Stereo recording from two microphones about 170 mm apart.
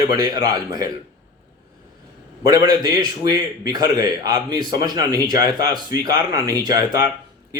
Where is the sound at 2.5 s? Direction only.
25° right (ahead or behind).